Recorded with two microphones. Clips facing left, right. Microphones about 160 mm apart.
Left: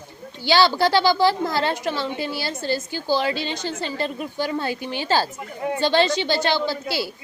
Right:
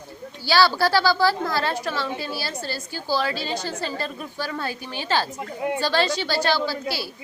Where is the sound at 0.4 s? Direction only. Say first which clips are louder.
Left 2 dB; 20° left (ahead or behind).